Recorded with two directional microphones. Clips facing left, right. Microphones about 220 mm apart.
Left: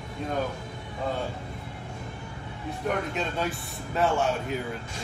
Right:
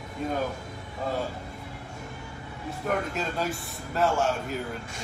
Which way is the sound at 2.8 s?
Centre (ahead or behind).